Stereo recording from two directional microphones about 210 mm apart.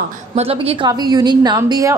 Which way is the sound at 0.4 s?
30° right (ahead or behind).